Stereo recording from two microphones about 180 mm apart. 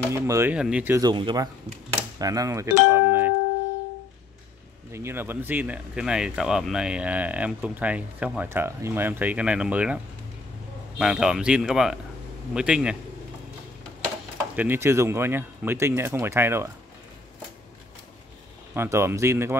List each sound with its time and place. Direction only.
0.1 s speech: 15° right (ahead or behind)
1.0 s speech: 25° right (ahead or behind)
4.9 s speech: 15° right (ahead or behind)
11.0 s speech: 5° right (ahead or behind)
14.5 s speech: 10° right (ahead or behind)
18.8 s speech: 15° right (ahead or behind)